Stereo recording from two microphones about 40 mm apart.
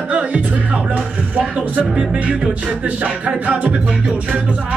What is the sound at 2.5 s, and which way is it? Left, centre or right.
Music, right.